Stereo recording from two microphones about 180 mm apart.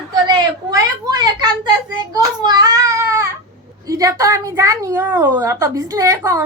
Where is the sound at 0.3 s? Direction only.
25° right (ahead or behind).